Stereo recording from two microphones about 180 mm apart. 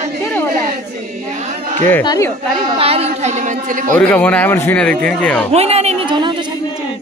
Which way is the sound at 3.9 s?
5° left (ahead or behind).